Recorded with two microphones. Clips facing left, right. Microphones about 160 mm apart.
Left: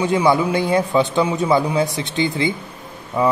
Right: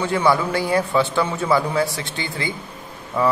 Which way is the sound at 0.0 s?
15° left (ahead or behind).